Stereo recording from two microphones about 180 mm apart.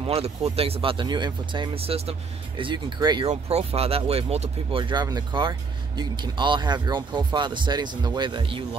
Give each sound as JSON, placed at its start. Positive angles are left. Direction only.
{"t": 0.0, "sound": "speech", "side_deg": -35}
{"t": 3.3, "sound": "speech", "side_deg": -35}